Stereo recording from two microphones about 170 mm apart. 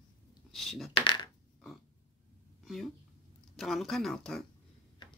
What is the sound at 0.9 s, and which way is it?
Coin, 30° left (ahead or behind).